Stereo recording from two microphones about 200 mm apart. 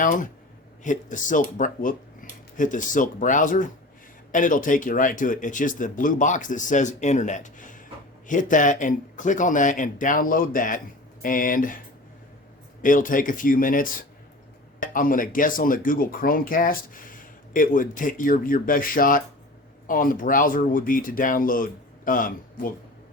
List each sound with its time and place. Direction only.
0.0 s speech: 40° left (ahead or behind)
12.8 s speech: 40° left (ahead or behind)